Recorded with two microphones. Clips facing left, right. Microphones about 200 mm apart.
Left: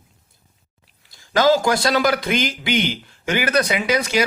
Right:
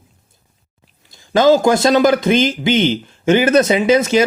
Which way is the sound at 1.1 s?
20° right (ahead or behind).